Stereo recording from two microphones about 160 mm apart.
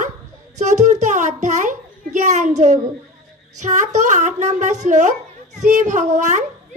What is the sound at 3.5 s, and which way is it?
A child's voice, 50° right (ahead or behind).